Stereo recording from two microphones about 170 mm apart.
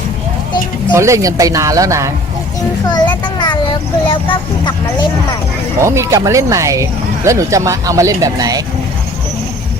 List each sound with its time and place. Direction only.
0.9 s speech: 15° right (ahead or behind)
2.8 s speech: 25° left (ahead or behind)
5.8 s speech: 15° right (ahead or behind)